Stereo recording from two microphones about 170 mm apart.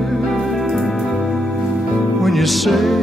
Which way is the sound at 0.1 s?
Centre (ahead or behind).